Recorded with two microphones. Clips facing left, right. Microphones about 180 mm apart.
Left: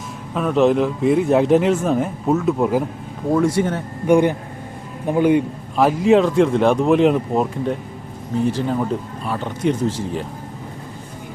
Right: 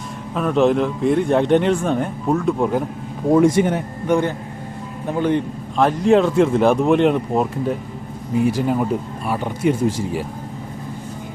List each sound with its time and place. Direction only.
0.3 s a man's voice: centre (ahead or behind)
3.3 s a man's voice: 20° right (ahead or behind)
4.0 s a man's voice: 15° left (ahead or behind); by 10.2 s 10° right (ahead or behind)